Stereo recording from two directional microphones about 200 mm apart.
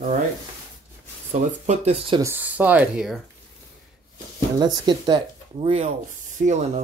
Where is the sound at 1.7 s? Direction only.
30° right (ahead or behind).